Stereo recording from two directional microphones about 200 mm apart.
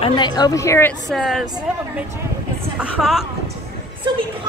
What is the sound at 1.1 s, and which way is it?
Speech, centre (ahead or behind).